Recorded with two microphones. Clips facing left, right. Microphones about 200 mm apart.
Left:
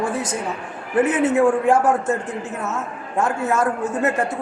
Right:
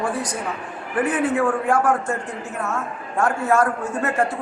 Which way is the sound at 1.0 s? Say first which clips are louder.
Left 4 dB; 25° left (ahead or behind).